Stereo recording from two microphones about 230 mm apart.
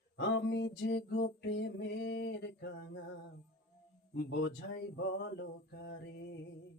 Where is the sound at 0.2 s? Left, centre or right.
Left.